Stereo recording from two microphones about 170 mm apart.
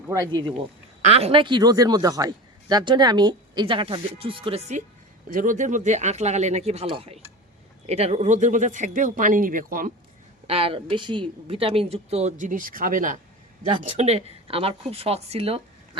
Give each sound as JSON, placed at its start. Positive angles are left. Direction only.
{"t": 0.1, "sound": "a man's voice", "side_deg": -25}
{"t": 1.0, "sound": "a man's voice", "side_deg": -35}
{"t": 5.3, "sound": "speech", "side_deg": -50}
{"t": 10.4, "sound": "speech", "side_deg": -35}
{"t": 13.8, "sound": "speech", "side_deg": -40}